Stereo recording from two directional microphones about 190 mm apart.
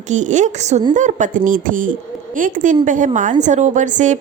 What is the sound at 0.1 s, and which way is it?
A woman's voice, 40° right (ahead or behind).